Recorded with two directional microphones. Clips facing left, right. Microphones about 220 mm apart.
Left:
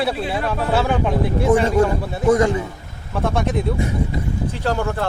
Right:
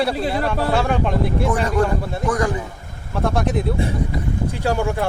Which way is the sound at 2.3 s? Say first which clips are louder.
Left 6 dB; 25° left (ahead or behind).